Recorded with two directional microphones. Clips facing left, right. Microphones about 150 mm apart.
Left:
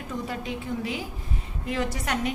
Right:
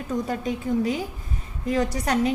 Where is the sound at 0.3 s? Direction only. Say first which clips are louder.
Right 6 dB; 40° right (ahead or behind).